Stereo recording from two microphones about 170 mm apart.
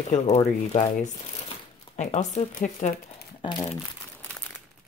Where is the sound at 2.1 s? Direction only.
40° left (ahead or behind).